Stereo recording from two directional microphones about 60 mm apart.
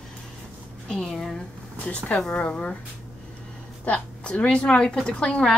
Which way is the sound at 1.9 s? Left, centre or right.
Left.